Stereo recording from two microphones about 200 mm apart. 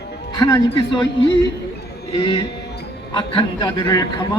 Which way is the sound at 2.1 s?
30° left (ahead or behind).